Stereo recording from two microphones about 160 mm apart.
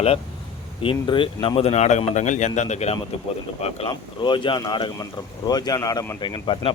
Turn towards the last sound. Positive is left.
turn(degrees=30)  # may be behind; listen again after turning